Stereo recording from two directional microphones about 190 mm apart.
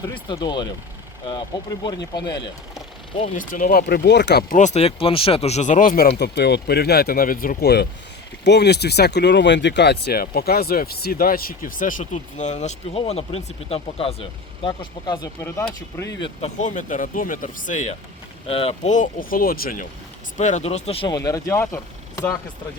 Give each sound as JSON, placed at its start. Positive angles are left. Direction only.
{"t": 0.0, "sound": "speech", "side_deg": 20}
{"t": 1.8, "sound": "speech", "side_deg": 20}
{"t": 3.3, "sound": "speech", "side_deg": 45}
{"t": 16.4, "sound": "speech", "side_deg": 40}